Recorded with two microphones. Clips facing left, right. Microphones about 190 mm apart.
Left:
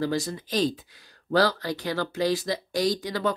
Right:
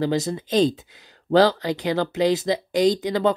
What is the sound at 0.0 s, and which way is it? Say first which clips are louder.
Speech: right 4 dB; 20° right (ahead or behind).